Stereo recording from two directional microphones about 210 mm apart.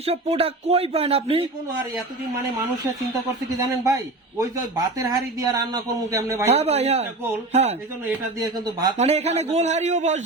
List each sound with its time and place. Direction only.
0.0 s speech: 30° right (ahead or behind)
3.6 s speech: 15° right (ahead or behind)
6.5 s a man's voice: 30° right (ahead or behind)
8.0 s speech: 15° right (ahead or behind)
9.0 s a man's voice: 30° right (ahead or behind)